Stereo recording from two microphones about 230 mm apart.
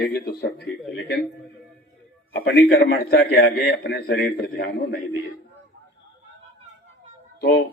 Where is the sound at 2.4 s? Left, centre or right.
Left.